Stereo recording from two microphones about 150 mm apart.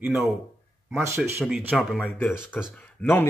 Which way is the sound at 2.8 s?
15° left (ahead or behind).